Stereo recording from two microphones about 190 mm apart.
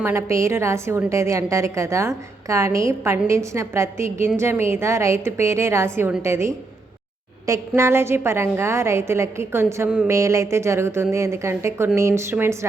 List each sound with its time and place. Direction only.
0.0 s a woman's voice: 15° right (ahead or behind)